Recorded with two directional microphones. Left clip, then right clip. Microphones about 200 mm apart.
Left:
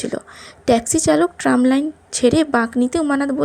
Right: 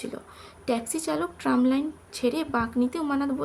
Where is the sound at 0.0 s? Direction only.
30° left (ahead or behind).